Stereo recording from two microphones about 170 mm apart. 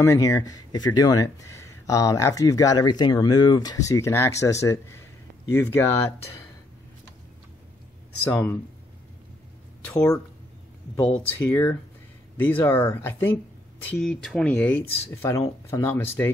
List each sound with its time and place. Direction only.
0.0 s speech: 20° left (ahead or behind)
8.3 s speech: 10° left (ahead or behind)
11.1 s speech: 10° left (ahead or behind)